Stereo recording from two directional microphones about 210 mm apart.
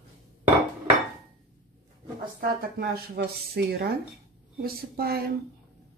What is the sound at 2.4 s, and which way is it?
Speech, 45° right (ahead or behind).